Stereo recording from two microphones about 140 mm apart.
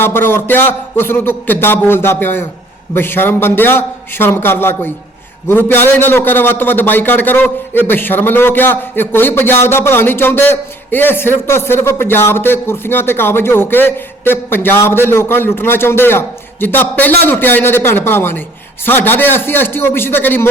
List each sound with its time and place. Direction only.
0.0 s a man's voice: 15° left (ahead or behind)